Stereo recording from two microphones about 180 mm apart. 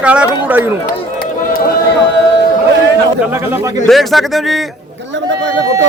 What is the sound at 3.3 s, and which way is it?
Speech, 15° right (ahead or behind).